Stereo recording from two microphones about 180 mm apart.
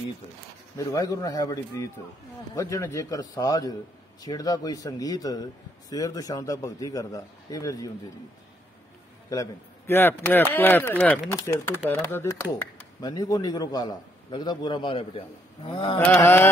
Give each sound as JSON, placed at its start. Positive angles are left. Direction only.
{"t": 0.7, "sound": "a man's voice", "side_deg": 20}
{"t": 9.3, "sound": "a man's voice", "side_deg": 15}
{"t": 16.2, "sound": "speech", "side_deg": 10}